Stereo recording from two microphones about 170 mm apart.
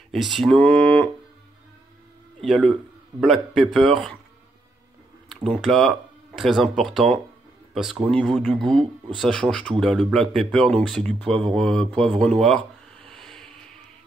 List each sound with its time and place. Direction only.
0.1 s speech: centre (ahead or behind)
2.4 s a man's voice: centre (ahead or behind)
5.6 s speech: centre (ahead or behind)